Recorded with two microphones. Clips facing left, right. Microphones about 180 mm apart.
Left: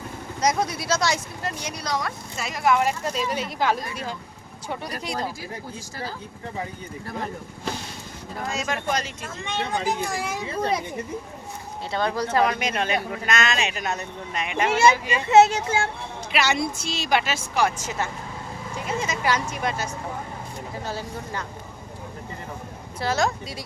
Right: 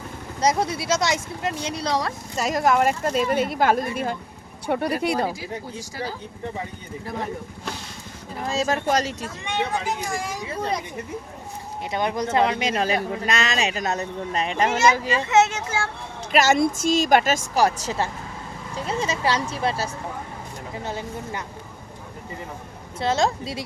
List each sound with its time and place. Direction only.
0.4 s a woman's voice: 25° right (ahead or behind); by 5.1 s 60° right (ahead or behind)
8.4 s speech: 35° right (ahead or behind)
9.8 s speech: centre (ahead or behind)
11.9 s speech: 15° right (ahead or behind); by 14.5 s 35° right (ahead or behind)
15.3 s a child's voice: 35° left (ahead or behind)
16.3 s a woman's voice: 45° right (ahead or behind)
20.8 s speech: 20° right (ahead or behind)
23.0 s speech: 25° right (ahead or behind)